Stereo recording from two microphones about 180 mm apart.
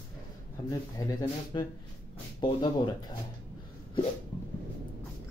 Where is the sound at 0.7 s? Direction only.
20° left (ahead or behind).